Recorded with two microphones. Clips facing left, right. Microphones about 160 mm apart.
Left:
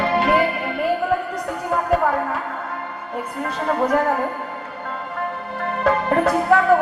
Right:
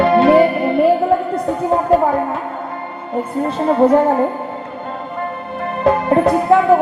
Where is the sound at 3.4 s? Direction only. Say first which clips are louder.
Right 8 dB; 30° right (ahead or behind).